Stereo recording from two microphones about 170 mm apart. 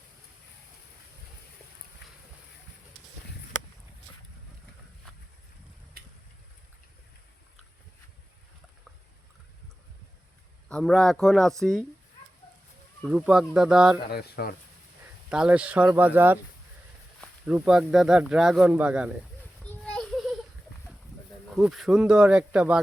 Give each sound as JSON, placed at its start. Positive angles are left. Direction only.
{"t": 6.0, "sound": "a sound", "side_deg": -65}
{"t": 10.7, "sound": "speech", "side_deg": 5}
{"t": 13.1, "sound": "speech", "side_deg": -5}
{"t": 14.1, "sound": "speech", "side_deg": 65}
{"t": 15.3, "sound": "speech", "side_deg": -5}
{"t": 19.4, "sound": "children playing", "side_deg": 10}
{"t": 21.5, "sound": "speech", "side_deg": 0}